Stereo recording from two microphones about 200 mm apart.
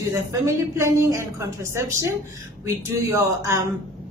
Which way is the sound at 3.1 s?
15° right (ahead or behind).